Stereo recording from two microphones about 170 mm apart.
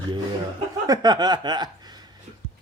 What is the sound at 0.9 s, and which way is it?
Speech, 25° right (ahead or behind).